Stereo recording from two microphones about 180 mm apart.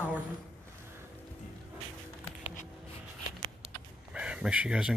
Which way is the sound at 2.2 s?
35° left (ahead or behind).